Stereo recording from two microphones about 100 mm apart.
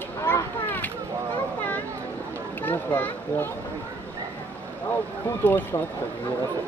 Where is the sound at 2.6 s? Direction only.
15° left (ahead or behind).